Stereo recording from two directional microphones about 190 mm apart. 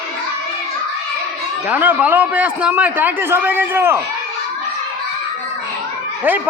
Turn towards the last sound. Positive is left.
turn(degrees=-10)  # may be behind; listen again after turning